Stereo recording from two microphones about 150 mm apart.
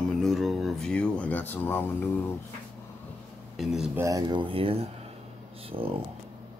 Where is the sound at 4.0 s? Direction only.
20° right (ahead or behind); by 6.0 s 40° right (ahead or behind).